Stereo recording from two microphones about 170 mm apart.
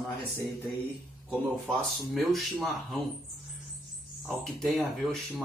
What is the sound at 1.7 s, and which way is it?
Speech, centre (ahead or behind).